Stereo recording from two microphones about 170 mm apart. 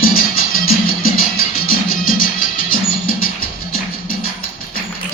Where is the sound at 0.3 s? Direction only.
60° left (ahead or behind).